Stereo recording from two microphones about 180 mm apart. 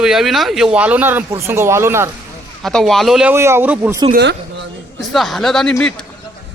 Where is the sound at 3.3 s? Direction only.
15° right (ahead or behind).